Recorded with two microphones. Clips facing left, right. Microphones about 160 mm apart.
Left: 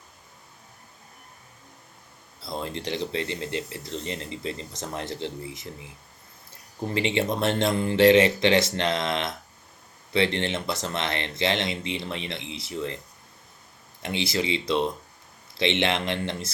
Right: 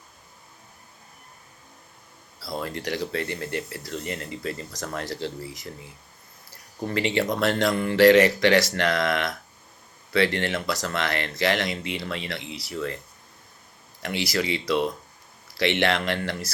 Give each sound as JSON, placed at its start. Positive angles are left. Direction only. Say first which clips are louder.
{"t": 2.4, "sound": "speech", "louder": "right 1 dB", "side_deg": 20}
{"t": 14.0, "sound": "speech", "louder": "even", "side_deg": 25}